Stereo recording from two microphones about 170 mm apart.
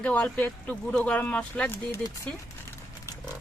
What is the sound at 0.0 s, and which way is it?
Speech, 10° left (ahead or behind).